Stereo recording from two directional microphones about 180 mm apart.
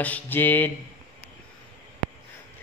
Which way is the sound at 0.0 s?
10° left (ahead or behind).